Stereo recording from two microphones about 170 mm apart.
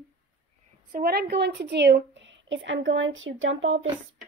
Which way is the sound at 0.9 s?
65° right (ahead or behind).